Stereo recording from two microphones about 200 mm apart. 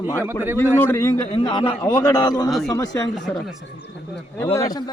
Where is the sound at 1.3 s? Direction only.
25° left (ahead or behind).